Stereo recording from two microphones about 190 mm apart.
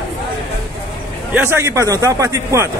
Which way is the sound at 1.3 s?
10° right (ahead or behind).